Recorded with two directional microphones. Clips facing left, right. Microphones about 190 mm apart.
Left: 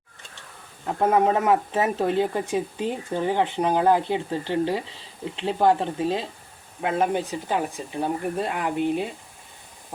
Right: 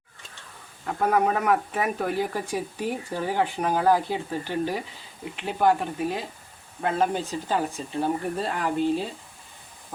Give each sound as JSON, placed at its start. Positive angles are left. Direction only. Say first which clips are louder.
{"t": 0.9, "sound": "speech", "louder": "left 3 dB", "side_deg": 25}